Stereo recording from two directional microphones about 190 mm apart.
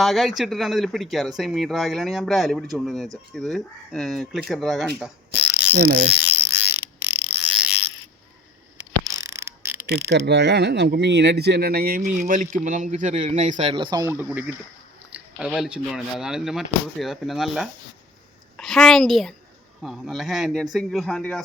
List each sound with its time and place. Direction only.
0.0 s speech: centre (ahead or behind)
4.9 s mechanisms: centre (ahead or behind)
5.7 s speech: 60° right (ahead or behind)
6.7 s a sound: 10° right (ahead or behind)
8.8 s mechanisms: 15° right (ahead or behind)
9.9 s a woman's voice: 60° right (ahead or behind); by 21.4 s 5° left (ahead or behind)